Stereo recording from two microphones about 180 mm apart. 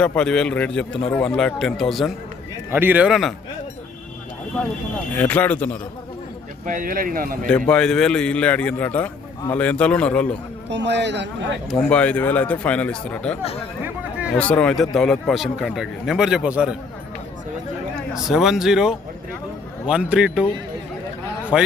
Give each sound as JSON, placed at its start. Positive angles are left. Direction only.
{"t": 0.0, "sound": "speech", "side_deg": 5}
{"t": 2.7, "sound": "speech", "side_deg": -10}
{"t": 5.1, "sound": "speech", "side_deg": 10}
{"t": 6.7, "sound": "speech", "side_deg": -50}
{"t": 7.4, "sound": "speech", "side_deg": 5}
{"t": 10.7, "sound": "speech", "side_deg": -75}
{"t": 11.7, "sound": "speech", "side_deg": 5}
{"t": 13.8, "sound": "a sound", "side_deg": -5}
{"t": 14.3, "sound": "speech", "side_deg": 5}
{"t": 18.1, "sound": "speech", "side_deg": 0}
{"t": 21.5, "sound": "speech", "side_deg": -5}